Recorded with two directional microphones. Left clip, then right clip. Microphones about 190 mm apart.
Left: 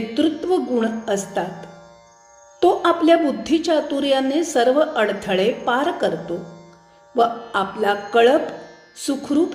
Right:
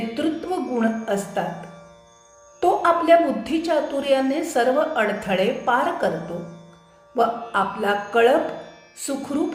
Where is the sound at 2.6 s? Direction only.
40° left (ahead or behind).